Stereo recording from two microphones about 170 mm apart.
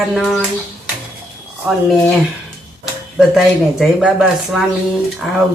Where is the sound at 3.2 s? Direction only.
Centre (ahead or behind).